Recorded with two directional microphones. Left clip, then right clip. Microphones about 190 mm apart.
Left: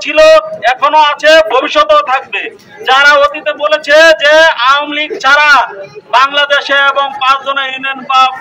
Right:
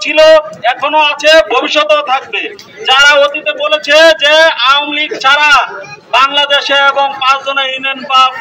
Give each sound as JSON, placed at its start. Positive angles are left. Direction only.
{"t": 0.0, "sound": "a man's voice", "side_deg": 15}